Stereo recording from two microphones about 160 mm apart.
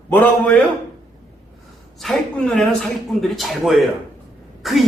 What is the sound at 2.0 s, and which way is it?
A man's voice, centre (ahead or behind).